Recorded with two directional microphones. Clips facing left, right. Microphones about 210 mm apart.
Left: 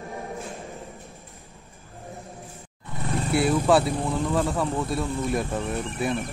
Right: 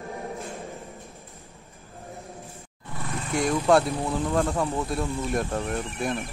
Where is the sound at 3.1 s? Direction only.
35° left (ahead or behind).